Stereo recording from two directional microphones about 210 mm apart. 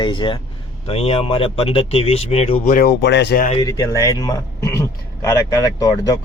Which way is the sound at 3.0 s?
55° left (ahead or behind).